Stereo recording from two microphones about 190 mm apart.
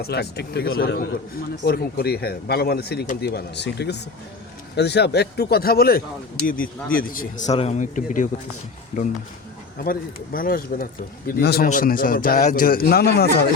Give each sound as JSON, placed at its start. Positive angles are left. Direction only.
{"t": 0.0, "sound": "a man's voice", "side_deg": 60}